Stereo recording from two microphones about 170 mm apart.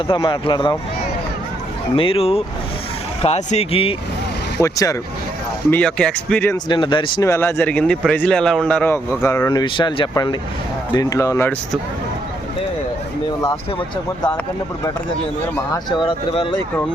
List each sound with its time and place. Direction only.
0.1 s speech: 30° left (ahead or behind)
2.0 s speech: 35° left (ahead or behind)
4.6 s speech: 20° left (ahead or behind)
5.7 s speech: 5° left (ahead or behind)
6.7 s speech: 30° left (ahead or behind)
7.3 s speech: 15° left (ahead or behind)
15.5 s speech: 25° left (ahead or behind)